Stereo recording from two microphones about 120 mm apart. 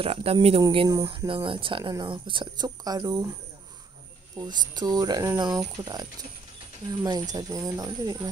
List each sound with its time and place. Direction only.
0.0 s a woman's voice: 55° right (ahead or behind)
0.8 s speech: 30° right (ahead or behind)
1.1 s a woman's voice: 45° right (ahead or behind)
4.5 s speech: 35° right (ahead or behind)